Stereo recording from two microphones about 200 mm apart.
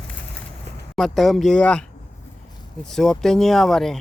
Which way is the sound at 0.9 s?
Centre (ahead or behind).